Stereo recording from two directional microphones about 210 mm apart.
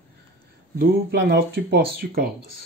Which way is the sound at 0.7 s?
50° right (ahead or behind).